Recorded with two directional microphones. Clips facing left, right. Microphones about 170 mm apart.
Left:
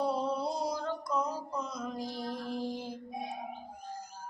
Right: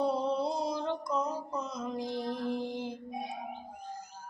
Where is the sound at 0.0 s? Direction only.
25° right (ahead or behind).